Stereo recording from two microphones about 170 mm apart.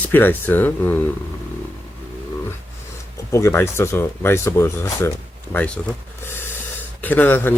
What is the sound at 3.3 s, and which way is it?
Speech, 15° left (ahead or behind).